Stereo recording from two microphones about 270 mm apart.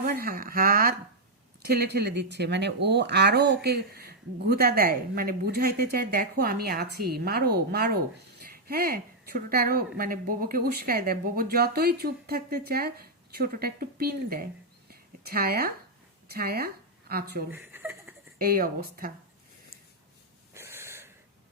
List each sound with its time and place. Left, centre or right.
0.0 s a sound: right
1.6 s a woman's voice: right
17.5 s chuckle: centre
18.3 s a woman's voice: right
20.5 s wheeze: centre